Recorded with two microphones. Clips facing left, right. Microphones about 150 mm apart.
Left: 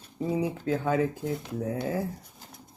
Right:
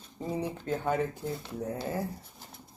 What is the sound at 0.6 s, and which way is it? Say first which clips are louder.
Speech: left 2 dB; 90° left.